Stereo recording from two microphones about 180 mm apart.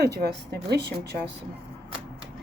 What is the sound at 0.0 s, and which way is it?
Speech, 65° right (ahead or behind).